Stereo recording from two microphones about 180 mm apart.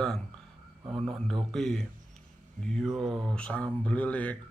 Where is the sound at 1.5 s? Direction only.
5° left (ahead or behind).